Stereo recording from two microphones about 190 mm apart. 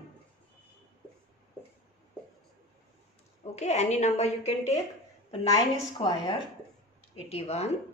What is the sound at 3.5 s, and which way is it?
A woman's voice, 35° left (ahead or behind).